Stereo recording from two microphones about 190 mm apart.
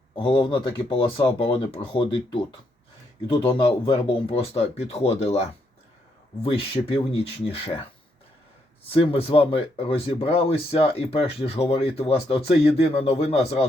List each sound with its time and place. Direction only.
0.2 s speech: 25° left (ahead or behind)
6.4 s speech: 30° left (ahead or behind)